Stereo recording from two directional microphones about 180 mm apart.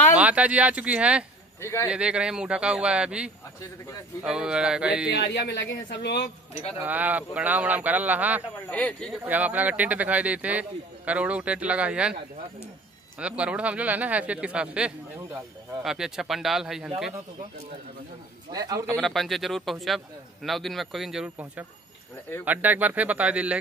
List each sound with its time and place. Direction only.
0.2 s speech: 10° right (ahead or behind)
1.6 s speech: 15° left (ahead or behind)
1.9 s speech: 5° right (ahead or behind)
5.1 s speech: 70° left (ahead or behind)
6.8 s speech: 10° right (ahead or behind)
8.6 s speech: 5° left (ahead or behind)
9.2 s speech: 10° right (ahead or behind)
13.2 s speech: 5° right (ahead or behind)
18.5 s speech: 20° right (ahead or behind)
18.9 s speech: centre (ahead or behind)